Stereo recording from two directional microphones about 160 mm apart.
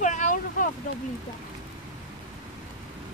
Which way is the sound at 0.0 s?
50° left (ahead or behind).